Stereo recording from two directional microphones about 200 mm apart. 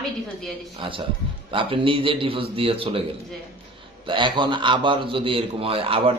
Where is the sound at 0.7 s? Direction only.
25° right (ahead or behind).